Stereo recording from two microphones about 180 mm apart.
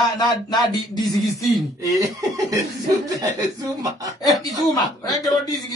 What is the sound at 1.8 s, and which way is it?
Chuckle, 20° right (ahead or behind).